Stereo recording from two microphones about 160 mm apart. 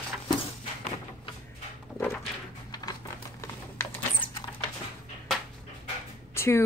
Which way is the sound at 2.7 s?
25° left (ahead or behind).